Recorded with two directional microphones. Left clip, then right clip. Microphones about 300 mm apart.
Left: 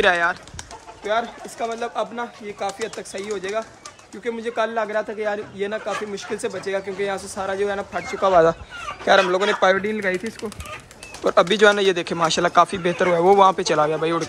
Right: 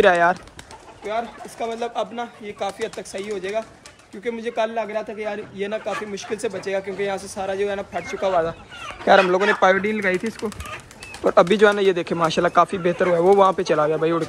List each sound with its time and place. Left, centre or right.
0.0 s speech: centre
9.3 s speech: centre